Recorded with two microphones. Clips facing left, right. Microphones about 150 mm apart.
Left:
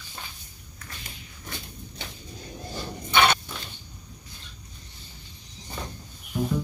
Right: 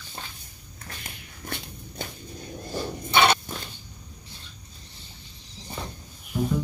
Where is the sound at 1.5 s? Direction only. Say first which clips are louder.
Right 4 dB; 65° right (ahead or behind).